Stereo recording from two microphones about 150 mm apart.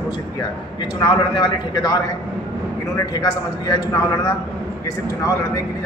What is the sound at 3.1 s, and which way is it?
Speech, 25° left (ahead or behind).